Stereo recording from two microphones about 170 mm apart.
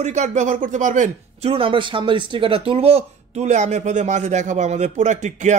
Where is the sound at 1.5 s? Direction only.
30° right (ahead or behind).